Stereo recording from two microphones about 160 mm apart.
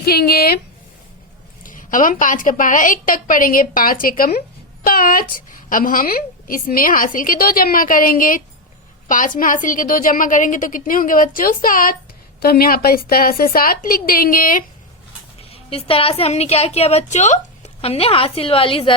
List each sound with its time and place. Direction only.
0.0 s a woman's voice: 75° left (ahead or behind)
1.6 s a woman's voice: 55° left (ahead or behind)
15.5 s a woman's voice: 35° left (ahead or behind)